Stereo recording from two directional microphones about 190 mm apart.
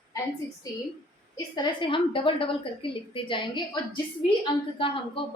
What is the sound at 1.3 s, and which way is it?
A woman's voice, 20° left (ahead or behind).